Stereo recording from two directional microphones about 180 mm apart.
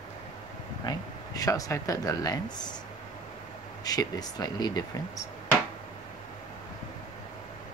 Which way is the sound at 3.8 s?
20° left (ahead or behind).